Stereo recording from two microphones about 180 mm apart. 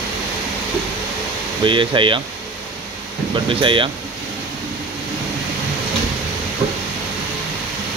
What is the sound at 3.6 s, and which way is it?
Speech, 25° right (ahead or behind).